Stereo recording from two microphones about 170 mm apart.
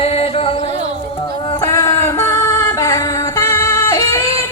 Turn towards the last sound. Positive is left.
turn(degrees=15)  # may be behind; listen again after turning